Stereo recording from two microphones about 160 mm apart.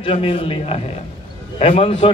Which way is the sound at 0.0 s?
35° left (ahead or behind).